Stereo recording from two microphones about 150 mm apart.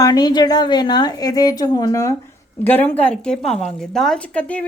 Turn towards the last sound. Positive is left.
turn(degrees=10)  # may be behind; listen again after turning